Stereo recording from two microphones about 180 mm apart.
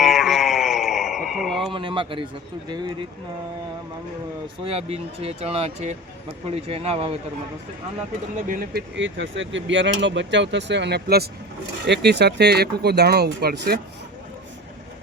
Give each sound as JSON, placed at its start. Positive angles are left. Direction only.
{"t": 0.0, "sound": "a sound", "side_deg": 0}
{"t": 1.7, "sound": "speech", "side_deg": -30}
{"t": 4.6, "sound": "speech", "side_deg": -35}
{"t": 8.4, "sound": "speech", "side_deg": -50}
{"t": 9.0, "sound": "speech", "side_deg": -90}